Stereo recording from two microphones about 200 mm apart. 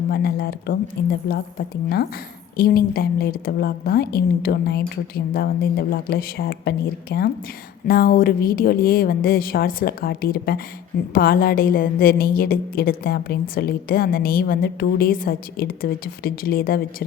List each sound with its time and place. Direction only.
0.1 s a woman's voice: 50° left (ahead or behind)